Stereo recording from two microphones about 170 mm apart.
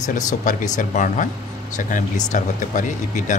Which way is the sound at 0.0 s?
50° left (ahead or behind).